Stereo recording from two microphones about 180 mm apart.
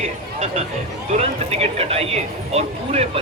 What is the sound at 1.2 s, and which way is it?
Speech, 35° right (ahead or behind).